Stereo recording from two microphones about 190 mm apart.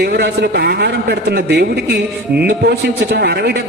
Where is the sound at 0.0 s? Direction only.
60° right (ahead or behind).